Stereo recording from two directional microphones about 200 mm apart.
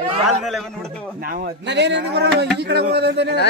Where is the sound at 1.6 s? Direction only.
60° right (ahead or behind).